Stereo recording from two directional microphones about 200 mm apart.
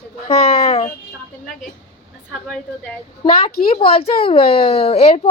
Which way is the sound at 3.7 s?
30° left (ahead or behind).